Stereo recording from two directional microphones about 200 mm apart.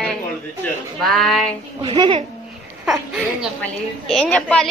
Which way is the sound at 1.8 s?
25° right (ahead or behind).